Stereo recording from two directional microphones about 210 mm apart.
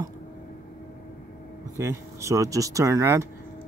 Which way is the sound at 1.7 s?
15° right (ahead or behind).